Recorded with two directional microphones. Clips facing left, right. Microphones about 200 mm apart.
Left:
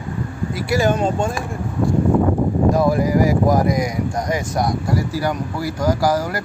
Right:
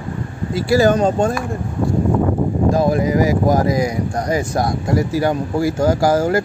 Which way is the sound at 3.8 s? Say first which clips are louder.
Right 2 dB; 30° right (ahead or behind).